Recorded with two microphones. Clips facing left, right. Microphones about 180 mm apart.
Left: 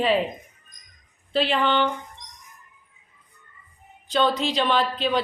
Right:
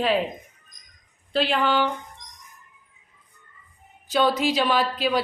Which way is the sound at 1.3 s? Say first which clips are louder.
Even; centre (ahead or behind).